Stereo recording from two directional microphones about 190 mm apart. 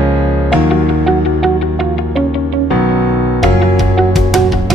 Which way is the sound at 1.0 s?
Centre (ahead or behind).